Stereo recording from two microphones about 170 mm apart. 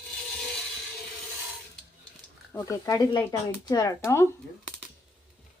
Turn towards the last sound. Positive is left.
turn(degrees=15)  # may be behind; listen again after turning